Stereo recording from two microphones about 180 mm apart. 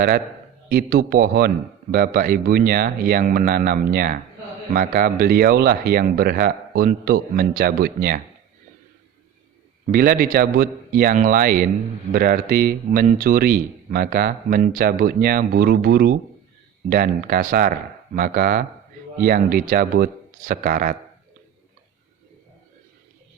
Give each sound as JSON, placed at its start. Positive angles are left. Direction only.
{"t": 0.7, "sound": "speech", "side_deg": -55}
{"t": 9.9, "sound": "speech", "side_deg": -55}